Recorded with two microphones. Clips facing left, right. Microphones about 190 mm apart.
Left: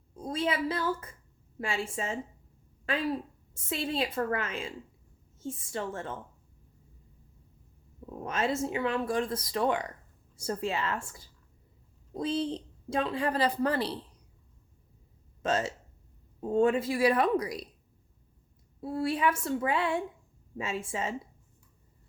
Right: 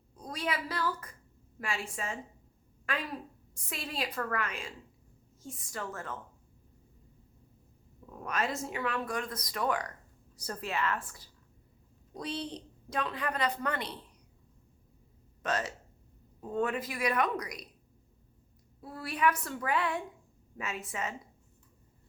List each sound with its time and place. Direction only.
0.2 s a woman's voice: 25° left (ahead or behind)
8.1 s a woman's voice: 25° left (ahead or behind)
15.4 s a woman's voice: 25° left (ahead or behind)
18.8 s a woman's voice: 25° left (ahead or behind)